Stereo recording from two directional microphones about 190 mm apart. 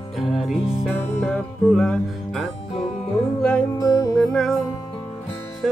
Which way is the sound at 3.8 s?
20° left (ahead or behind).